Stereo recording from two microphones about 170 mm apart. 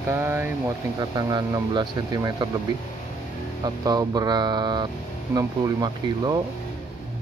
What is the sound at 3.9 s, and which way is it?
Speech, 25° right (ahead or behind).